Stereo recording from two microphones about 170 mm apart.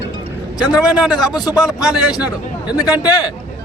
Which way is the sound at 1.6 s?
5° right (ahead or behind).